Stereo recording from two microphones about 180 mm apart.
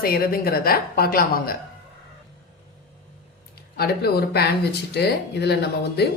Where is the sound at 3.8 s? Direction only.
60° left (ahead or behind).